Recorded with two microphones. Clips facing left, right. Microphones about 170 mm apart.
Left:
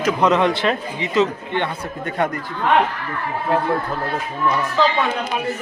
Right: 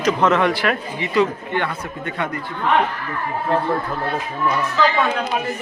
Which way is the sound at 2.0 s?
40° left (ahead or behind).